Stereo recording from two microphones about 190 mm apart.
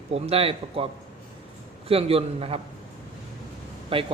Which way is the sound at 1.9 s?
30° right (ahead or behind).